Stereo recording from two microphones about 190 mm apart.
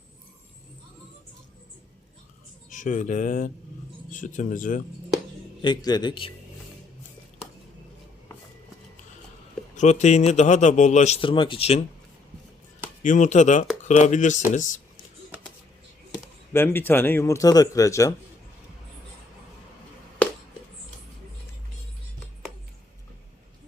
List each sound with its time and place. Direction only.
2.6 s speech: 45° left (ahead or behind)
5.6 s a man's voice: 20° left (ahead or behind)
9.7 s speech: 40° left (ahead or behind)
13.0 s speech: 40° left (ahead or behind)
16.5 s speech: 10° left (ahead or behind)